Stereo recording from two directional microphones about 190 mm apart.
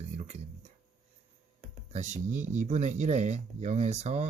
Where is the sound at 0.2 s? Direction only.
35° right (ahead or behind).